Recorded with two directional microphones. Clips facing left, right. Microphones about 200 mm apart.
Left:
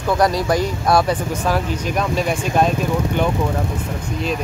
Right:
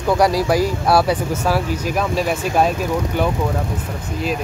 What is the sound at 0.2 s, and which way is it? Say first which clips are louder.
Speech: right 1 dB; 5° right (ahead or behind).